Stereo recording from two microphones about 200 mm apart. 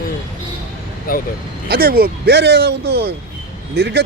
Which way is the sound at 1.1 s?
45° left (ahead or behind).